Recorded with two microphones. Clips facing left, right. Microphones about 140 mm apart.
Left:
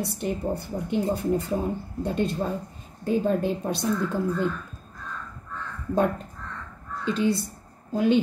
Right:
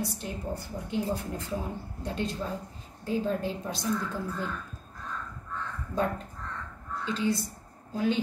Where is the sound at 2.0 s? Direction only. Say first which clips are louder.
Left 7 dB; 60° left (ahead or behind).